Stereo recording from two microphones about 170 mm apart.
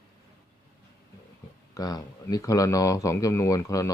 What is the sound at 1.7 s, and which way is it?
Speech, 20° left (ahead or behind).